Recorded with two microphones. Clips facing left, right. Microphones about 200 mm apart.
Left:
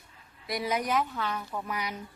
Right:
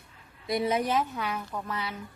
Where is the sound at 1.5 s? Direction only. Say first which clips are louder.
Even; 10° left (ahead or behind).